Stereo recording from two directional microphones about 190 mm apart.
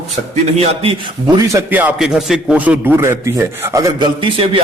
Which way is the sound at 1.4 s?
10° right (ahead or behind).